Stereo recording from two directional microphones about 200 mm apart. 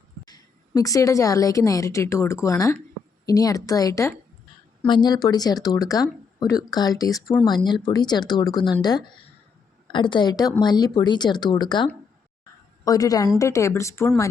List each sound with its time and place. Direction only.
0.3 s a woman's voice: 20° left (ahead or behind)